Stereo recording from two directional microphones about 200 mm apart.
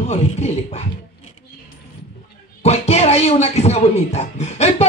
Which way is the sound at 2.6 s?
30° left (ahead or behind).